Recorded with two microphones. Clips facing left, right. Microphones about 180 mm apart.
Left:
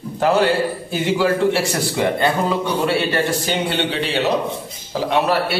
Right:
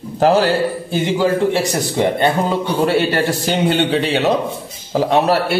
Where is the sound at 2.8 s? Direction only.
35° right (ahead or behind).